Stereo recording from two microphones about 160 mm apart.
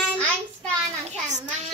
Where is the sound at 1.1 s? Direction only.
50° right (ahead or behind).